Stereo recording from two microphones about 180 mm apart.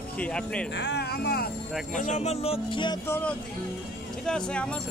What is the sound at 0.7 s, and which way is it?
Speech, 75° left (ahead or behind).